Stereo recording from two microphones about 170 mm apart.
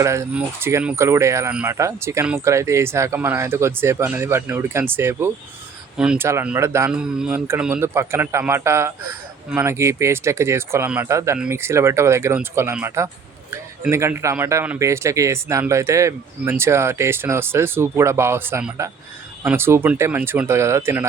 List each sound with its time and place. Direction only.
0.0 s a man's voice: 15° right (ahead or behind)